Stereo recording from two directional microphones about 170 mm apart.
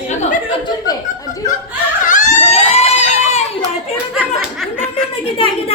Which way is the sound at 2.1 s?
50° left (ahead or behind).